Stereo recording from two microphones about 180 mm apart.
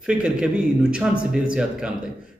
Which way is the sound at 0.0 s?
5° right (ahead or behind).